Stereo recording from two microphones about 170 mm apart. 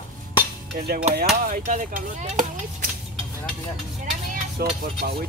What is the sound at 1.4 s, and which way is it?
Speech, 50° right (ahead or behind).